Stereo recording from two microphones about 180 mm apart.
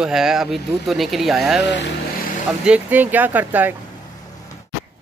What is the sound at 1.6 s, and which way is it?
Speech, 75° left (ahead or behind).